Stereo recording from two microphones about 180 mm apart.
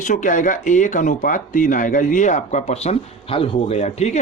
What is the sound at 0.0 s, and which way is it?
A man's voice, 45° left (ahead or behind).